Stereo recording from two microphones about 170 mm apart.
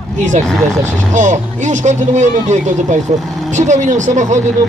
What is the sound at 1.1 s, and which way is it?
Speech, 45° right (ahead or behind).